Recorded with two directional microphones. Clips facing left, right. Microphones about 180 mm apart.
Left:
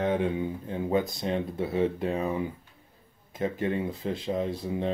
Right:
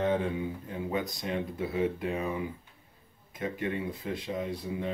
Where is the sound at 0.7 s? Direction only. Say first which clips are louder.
Left 9 dB; 30° left (ahead or behind).